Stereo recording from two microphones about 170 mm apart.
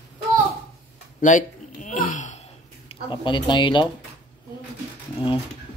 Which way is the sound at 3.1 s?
30° left (ahead or behind).